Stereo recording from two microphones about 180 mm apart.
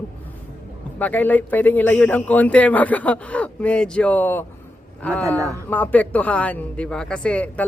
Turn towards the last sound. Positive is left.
turn(degrees=10)  # may be behind; listen again after turning